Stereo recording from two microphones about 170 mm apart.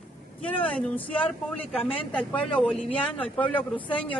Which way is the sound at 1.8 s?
30° left (ahead or behind).